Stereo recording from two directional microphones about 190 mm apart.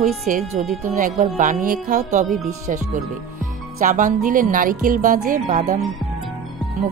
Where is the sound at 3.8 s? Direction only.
40° right (ahead or behind).